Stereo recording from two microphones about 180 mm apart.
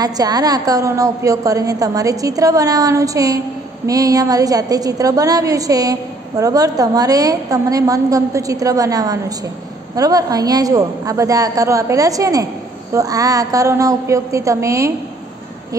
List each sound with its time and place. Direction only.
0.0 s a woman's voice: 20° right (ahead or behind)